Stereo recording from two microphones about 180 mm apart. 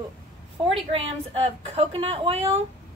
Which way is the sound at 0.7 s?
30° right (ahead or behind).